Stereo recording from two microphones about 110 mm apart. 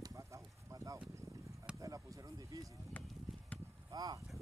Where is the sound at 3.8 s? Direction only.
35° right (ahead or behind).